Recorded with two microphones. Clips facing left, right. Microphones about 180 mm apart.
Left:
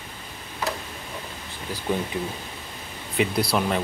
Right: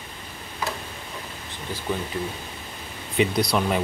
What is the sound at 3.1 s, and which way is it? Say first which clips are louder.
Speech: right 1 dB; 5° left (ahead or behind).